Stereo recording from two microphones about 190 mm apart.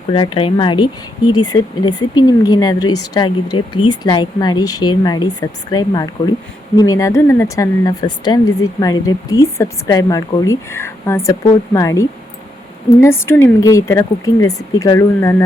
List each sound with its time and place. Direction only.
0.1 s speech: 25° left (ahead or behind)